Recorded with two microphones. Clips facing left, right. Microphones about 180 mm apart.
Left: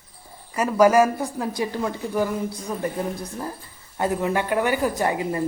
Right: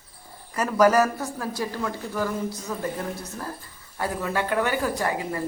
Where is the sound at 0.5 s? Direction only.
10° left (ahead or behind).